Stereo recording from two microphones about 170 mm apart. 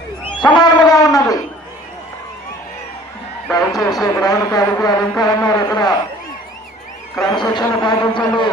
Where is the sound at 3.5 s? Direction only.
20° left (ahead or behind).